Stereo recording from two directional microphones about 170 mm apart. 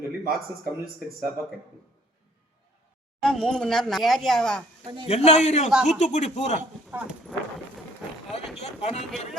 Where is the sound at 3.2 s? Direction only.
5° left (ahead or behind).